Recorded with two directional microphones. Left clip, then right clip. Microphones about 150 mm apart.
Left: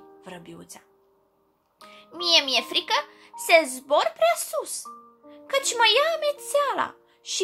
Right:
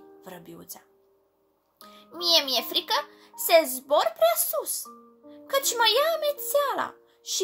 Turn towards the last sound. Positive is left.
turn(degrees=5)  # may be behind; listen again after turning